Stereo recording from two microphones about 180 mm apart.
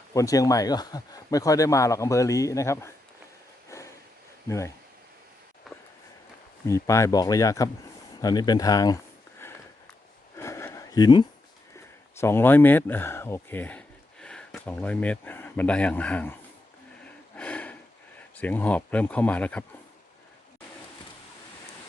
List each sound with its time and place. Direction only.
0.1 s speech: 20° left (ahead or behind)
3.7 s a sound: 15° left (ahead or behind)
4.4 s speech: 15° left (ahead or behind)
6.7 s speech: 15° left (ahead or behind)
10.3 s a sound: 15° left (ahead or behind)
12.2 s speech: 15° left (ahead or behind)
17.3 s snort: 5° left (ahead or behind)
18.3 s speech: 10° left (ahead or behind)